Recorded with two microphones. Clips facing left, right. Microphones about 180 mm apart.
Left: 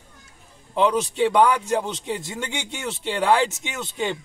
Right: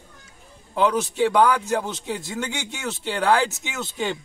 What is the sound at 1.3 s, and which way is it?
Speech, 20° left (ahead or behind).